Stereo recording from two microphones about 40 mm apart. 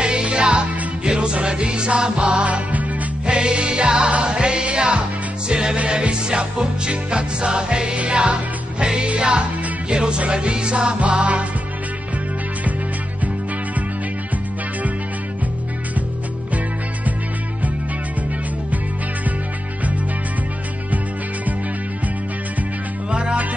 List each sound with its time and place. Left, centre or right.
0.0 s music: right
3.3 s music: right